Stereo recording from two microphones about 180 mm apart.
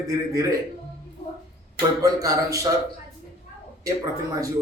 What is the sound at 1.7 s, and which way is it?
Speech, 20° right (ahead or behind).